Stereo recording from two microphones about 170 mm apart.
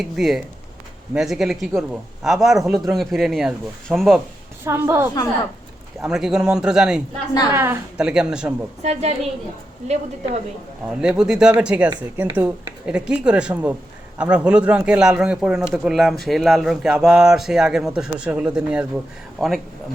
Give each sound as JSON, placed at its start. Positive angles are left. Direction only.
{"t": 0.0, "sound": "a man's voice", "side_deg": -5}
{"t": 4.6, "sound": "speech", "side_deg": -15}
{"t": 6.0, "sound": "a man's voice", "side_deg": -5}
{"t": 8.8, "sound": "a woman's voice", "side_deg": -40}
{"t": 10.8, "sound": "a man's voice", "side_deg": -5}